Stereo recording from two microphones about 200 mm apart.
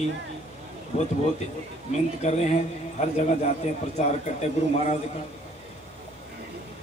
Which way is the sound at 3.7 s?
35° left (ahead or behind).